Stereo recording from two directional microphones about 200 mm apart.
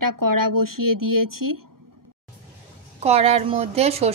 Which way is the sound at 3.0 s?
30° right (ahead or behind).